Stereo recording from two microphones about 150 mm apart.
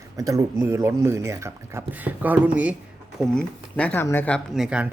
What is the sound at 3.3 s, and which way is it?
Speech, 10° left (ahead or behind).